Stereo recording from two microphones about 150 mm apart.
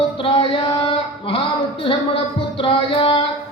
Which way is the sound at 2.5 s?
35° left (ahead or behind).